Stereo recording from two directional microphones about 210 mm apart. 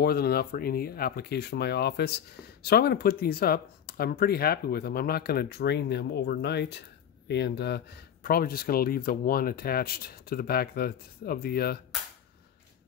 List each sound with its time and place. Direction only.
0.0 s speech: 50° left (ahead or behind)